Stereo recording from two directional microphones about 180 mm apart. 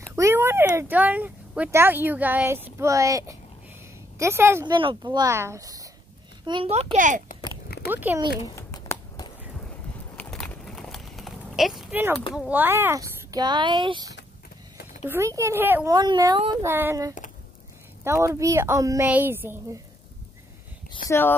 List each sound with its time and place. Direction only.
0.1 s a woman's voice: 15° right (ahead or behind)
4.7 s a child's voice: 25° right (ahead or behind)
6.7 s a child's voice: 35° right (ahead or behind)
7.6 s a sound: 60° left (ahead or behind)
7.9 s a woman's voice: 10° right (ahead or behind)
8.5 s a sound: 15° left (ahead or behind)
9.7 s a sound: 5° left (ahead or behind)
12.4 s speech: 10° right (ahead or behind); by 14.1 s 25° right (ahead or behind)
15.0 s a woman's voice: 15° right (ahead or behind)
21.1 s speech: 10° left (ahead or behind)